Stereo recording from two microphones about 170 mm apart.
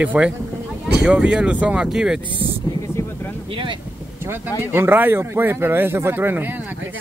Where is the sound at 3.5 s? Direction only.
30° right (ahead or behind).